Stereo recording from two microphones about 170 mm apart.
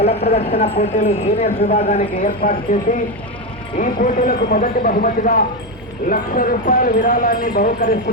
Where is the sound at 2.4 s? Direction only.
55° left (ahead or behind).